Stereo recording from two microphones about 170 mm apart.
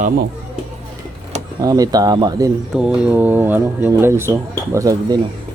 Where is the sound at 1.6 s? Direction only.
20° right (ahead or behind).